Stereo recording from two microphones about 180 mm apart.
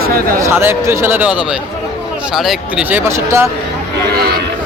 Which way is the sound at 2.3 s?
5° right (ahead or behind).